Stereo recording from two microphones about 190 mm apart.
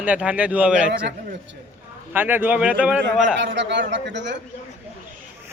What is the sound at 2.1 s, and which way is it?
Speech, 10° right (ahead or behind).